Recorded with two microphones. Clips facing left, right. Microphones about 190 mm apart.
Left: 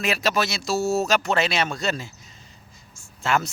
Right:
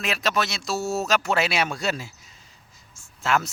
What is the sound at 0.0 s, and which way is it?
Speech, centre (ahead or behind).